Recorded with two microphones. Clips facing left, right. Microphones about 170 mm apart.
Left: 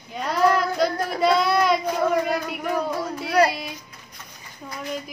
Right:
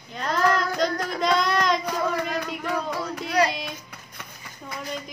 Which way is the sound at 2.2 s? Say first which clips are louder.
Left 3 dB; 40° left (ahead or behind).